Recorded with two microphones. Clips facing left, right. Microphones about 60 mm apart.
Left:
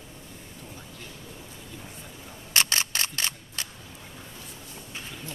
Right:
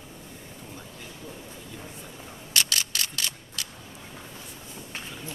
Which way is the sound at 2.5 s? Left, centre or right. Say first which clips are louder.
Left 2 dB; left.